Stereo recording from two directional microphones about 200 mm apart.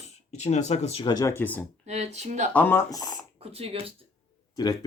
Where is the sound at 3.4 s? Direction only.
30° right (ahead or behind).